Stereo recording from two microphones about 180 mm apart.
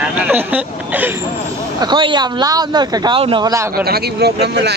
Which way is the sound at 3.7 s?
60° right (ahead or behind).